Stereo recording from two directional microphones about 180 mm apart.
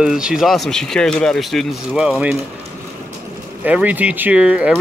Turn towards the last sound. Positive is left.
turn(degrees=-5)  # may be behind; listen again after turning